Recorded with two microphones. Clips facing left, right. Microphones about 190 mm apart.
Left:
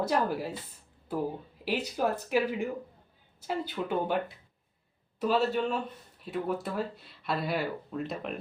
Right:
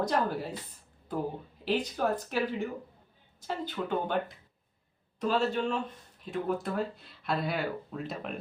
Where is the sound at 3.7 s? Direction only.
5° left (ahead or behind).